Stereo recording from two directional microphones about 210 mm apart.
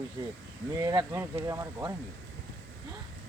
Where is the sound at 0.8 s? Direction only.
20° right (ahead or behind).